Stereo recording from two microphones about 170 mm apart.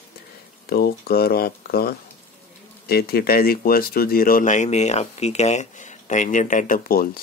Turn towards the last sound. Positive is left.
turn(degrees=60)  # may be behind; listen again after turning